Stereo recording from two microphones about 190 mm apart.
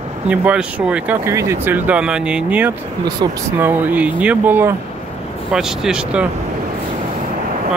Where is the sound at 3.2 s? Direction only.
20° right (ahead or behind).